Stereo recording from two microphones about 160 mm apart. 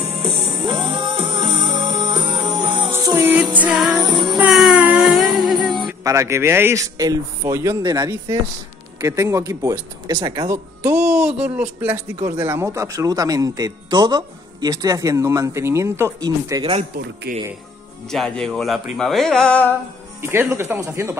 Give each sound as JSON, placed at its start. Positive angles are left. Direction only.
{"t": 0.0, "sound": "music", "side_deg": -35}
{"t": 4.0, "sound": "music", "side_deg": -30}
{"t": 4.4, "sound": "music", "side_deg": -5}
{"t": 6.0, "sound": "a man's voice", "side_deg": -15}
{"t": 17.3, "sound": "speech", "side_deg": -70}
{"t": 18.1, "sound": "speech", "side_deg": 5}
{"t": 20.2, "sound": "a man's voice", "side_deg": -15}